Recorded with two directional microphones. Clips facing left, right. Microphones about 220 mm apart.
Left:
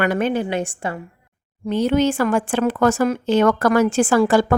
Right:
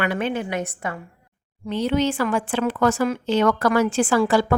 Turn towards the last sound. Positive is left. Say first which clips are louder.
# left 3 dB
turn(degrees=45)  # may be behind; listen again after turning